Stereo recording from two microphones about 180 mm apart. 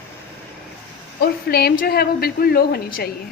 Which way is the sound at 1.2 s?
60° left (ahead or behind).